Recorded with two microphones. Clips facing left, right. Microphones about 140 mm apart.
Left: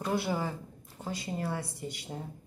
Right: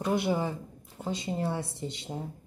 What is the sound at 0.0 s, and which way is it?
Speech, 20° right (ahead or behind).